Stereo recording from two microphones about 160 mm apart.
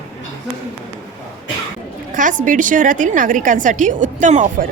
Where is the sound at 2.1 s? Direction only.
55° right (ahead or behind).